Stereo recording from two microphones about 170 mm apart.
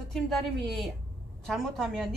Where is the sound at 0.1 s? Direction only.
Centre (ahead or behind).